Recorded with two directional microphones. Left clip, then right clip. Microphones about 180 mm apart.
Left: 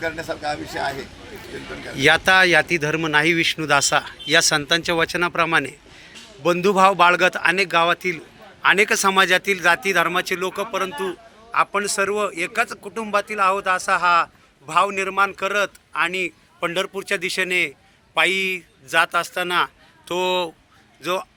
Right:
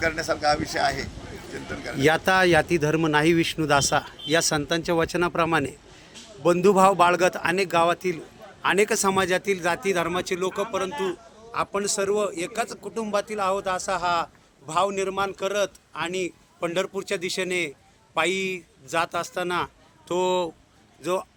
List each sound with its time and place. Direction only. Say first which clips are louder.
2.0 s a man's voice: left 5 dB; 20° right (ahead or behind)
21.0 s speech: left 3 dB; 30° right (ahead or behind)